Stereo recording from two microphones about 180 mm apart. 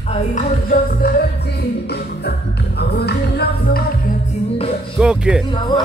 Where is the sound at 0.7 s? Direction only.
55° left (ahead or behind).